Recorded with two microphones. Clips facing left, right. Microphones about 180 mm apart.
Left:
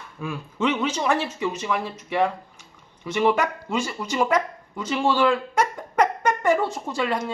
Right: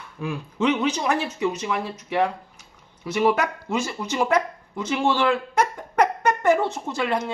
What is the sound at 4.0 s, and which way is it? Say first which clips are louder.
Speech: even; 10° right (ahead or behind).